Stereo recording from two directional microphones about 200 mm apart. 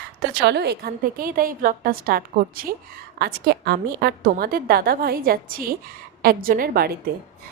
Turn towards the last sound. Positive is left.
turn(degrees=-50)  # may be behind; listen again after turning